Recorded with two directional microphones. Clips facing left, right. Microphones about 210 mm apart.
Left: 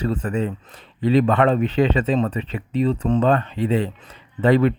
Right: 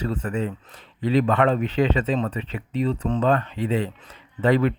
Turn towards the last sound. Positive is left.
turn(degrees=30)  # may be behind; listen again after turning